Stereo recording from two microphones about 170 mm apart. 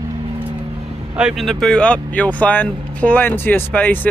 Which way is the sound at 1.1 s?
Centre (ahead or behind).